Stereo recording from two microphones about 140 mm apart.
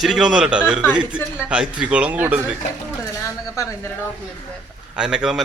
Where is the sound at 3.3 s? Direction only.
20° left (ahead or behind).